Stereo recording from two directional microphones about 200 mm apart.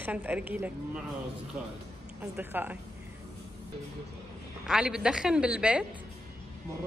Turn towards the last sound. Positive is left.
turn(degrees=-5)  # may be behind; listen again after turning